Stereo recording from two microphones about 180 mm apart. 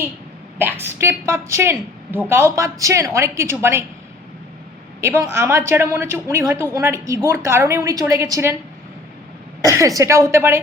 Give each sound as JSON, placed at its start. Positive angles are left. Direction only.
{"t": 0.6, "sound": "a woman's voice", "side_deg": -10}
{"t": 4.9, "sound": "a woman's voice", "side_deg": -15}
{"t": 9.6, "sound": "a woman's voice", "side_deg": -20}